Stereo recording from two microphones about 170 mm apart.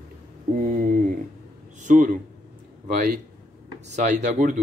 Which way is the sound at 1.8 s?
50° right (ahead or behind).